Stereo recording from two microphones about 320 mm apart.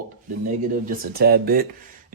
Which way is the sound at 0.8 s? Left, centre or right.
Right.